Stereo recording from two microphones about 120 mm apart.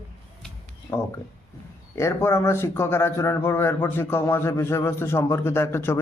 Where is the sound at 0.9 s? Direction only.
30° left (ahead or behind).